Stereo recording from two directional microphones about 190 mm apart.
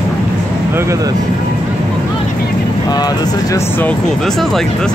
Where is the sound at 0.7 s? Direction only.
15° right (ahead or behind).